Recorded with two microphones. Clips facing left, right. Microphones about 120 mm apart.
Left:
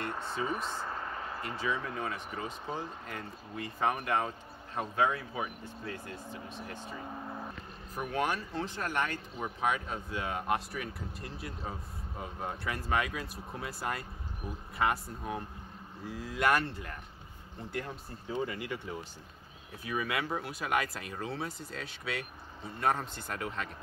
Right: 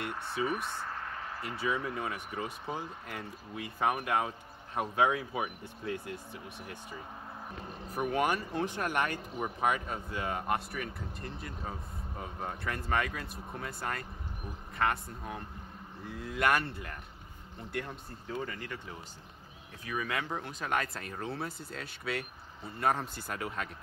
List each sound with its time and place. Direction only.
0.0 s speech: 5° right (ahead or behind)
0.7 s a sound: 10° left (ahead or behind)
1.4 s speech: 5° right (ahead or behind); by 18.8 s 10° left (ahead or behind)
19.8 s speech: 10° left (ahead or behind)